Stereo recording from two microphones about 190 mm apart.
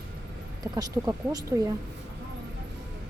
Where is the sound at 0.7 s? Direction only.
15° right (ahead or behind).